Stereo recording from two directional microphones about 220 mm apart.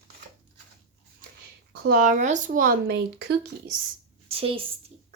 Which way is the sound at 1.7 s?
40° right (ahead or behind).